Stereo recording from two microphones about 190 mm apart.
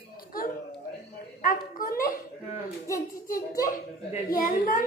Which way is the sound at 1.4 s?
45° left (ahead or behind).